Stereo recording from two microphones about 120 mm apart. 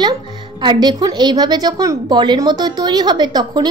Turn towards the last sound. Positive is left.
turn(degrees=-35)  # may be behind; listen again after turning